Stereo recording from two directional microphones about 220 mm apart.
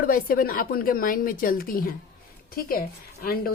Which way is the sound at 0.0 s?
40° left (ahead or behind).